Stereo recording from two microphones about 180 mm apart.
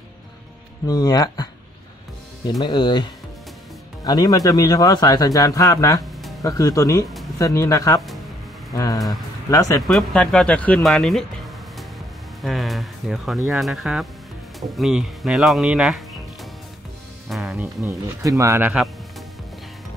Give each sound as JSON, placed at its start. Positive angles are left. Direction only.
{"t": 0.8, "sound": "speech", "side_deg": 20}
{"t": 2.6, "sound": "speech", "side_deg": 25}
{"t": 9.8, "sound": "speech", "side_deg": 5}
{"t": 12.4, "sound": "music", "side_deg": 0}
{"t": 13.5, "sound": "speech", "side_deg": 0}
{"t": 17.3, "sound": "music", "side_deg": -5}
{"t": 18.4, "sound": "speech", "side_deg": -15}